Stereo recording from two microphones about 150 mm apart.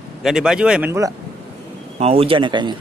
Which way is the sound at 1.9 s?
40° right (ahead or behind).